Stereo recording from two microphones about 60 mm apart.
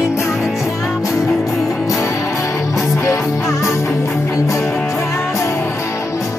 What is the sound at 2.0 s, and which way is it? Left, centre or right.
Music, left.